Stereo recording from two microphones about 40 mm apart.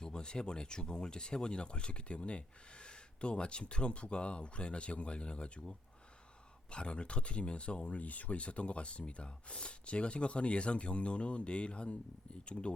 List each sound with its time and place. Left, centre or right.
0.0 s speech: left
7.9 s speech: left